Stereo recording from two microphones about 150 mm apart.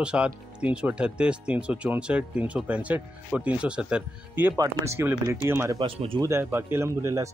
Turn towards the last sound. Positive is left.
turn(degrees=-20)  # may be behind; listen again after turning